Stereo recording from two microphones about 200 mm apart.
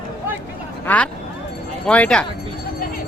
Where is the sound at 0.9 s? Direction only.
10° left (ahead or behind).